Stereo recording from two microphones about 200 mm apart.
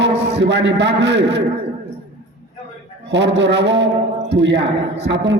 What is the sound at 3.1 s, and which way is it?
A man's voice, 65° right (ahead or behind).